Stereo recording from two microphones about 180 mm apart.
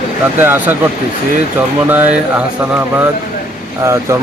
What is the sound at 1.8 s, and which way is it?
Speech, 10° right (ahead or behind).